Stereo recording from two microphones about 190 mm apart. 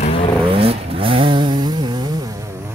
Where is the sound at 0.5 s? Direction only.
30° right (ahead or behind).